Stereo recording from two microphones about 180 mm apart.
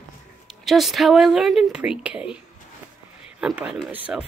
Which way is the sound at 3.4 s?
5° right (ahead or behind).